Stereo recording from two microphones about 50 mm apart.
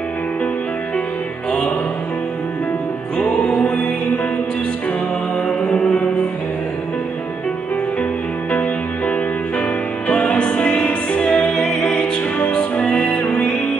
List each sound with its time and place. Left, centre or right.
3.5 s music: left
5.5 s mantra: centre
10.0 s music: left
12.4 s music: left